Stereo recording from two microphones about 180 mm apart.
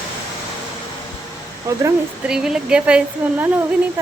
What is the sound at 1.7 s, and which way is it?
Speech, 15° right (ahead or behind).